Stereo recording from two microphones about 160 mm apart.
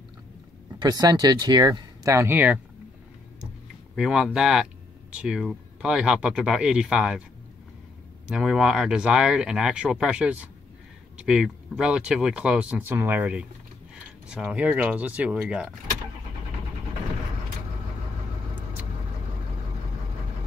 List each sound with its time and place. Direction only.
0.7 s speech: 25° right (ahead or behind)
3.9 s speech: 5° right (ahead or behind)
8.3 s speech: 5° right (ahead or behind)